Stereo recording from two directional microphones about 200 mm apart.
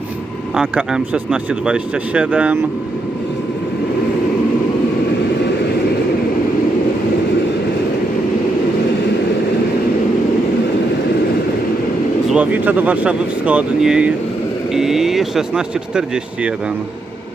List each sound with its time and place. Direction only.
0.5 s speech: 5° right (ahead or behind)
12.3 s speech: 5° right (ahead or behind)